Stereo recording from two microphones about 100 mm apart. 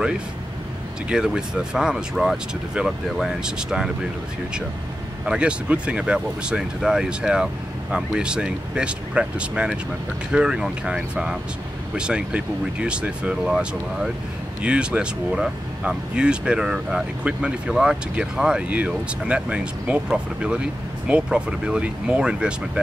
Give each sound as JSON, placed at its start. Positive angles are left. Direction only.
{"t": 1.0, "sound": "speech", "side_deg": -10}
{"t": 5.2, "sound": "speech", "side_deg": -10}